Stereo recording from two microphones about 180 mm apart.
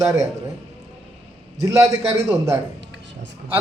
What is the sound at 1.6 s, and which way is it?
A man's voice, 15° right (ahead or behind).